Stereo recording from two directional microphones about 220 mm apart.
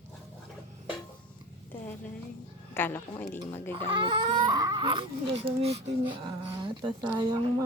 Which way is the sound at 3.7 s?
20° right (ahead or behind).